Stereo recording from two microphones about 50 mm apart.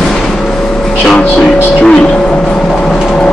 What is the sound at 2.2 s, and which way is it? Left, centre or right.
Vehicle, centre.